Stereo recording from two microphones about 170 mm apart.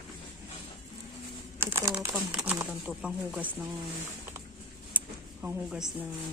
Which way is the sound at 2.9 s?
5° right (ahead or behind).